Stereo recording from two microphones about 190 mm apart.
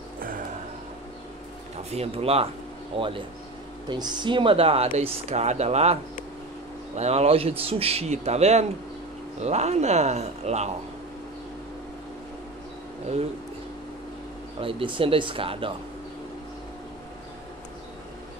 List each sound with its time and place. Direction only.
1.9 s speech: 30° right (ahead or behind)
7.0 s speech: 35° right (ahead or behind)
14.6 s speech: 30° right (ahead or behind)